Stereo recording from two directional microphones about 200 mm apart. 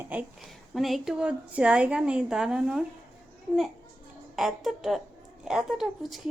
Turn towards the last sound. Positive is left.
turn(degrees=0)  # may be behind; listen again after turning